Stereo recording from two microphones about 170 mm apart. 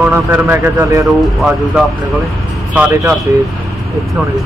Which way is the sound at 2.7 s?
10° right (ahead or behind).